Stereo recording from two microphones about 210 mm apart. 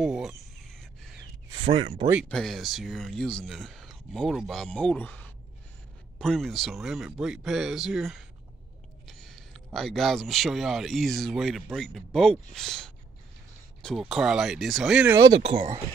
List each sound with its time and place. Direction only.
0.0 s speech: centre (ahead or behind)
1.5 s speech: 20° right (ahead or behind)
2.2 s speech: centre (ahead or behind)
9.0 s a sound: centre (ahead or behind)
9.8 s speech: centre (ahead or behind); by 15.8 s 25° right (ahead or behind)